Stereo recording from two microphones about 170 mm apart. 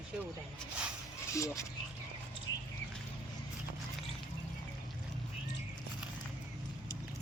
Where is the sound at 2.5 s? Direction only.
90° left.